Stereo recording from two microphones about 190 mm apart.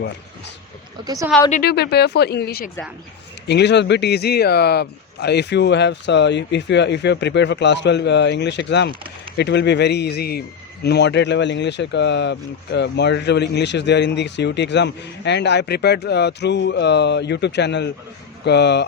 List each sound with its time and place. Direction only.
1.0 s a woman's voice: 20° right (ahead or behind)
1.6 s speech: 60° left (ahead or behind)